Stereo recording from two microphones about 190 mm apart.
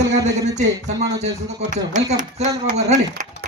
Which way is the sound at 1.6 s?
40° right (ahead or behind).